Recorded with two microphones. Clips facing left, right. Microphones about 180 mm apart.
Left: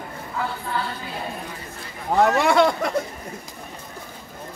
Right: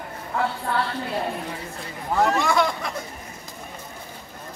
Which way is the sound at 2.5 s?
65° left (ahead or behind).